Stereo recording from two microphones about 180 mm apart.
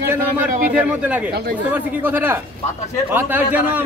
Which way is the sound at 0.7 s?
10° right (ahead or behind).